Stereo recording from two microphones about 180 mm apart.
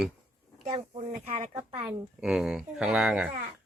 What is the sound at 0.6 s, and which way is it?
Speech, 30° right (ahead or behind).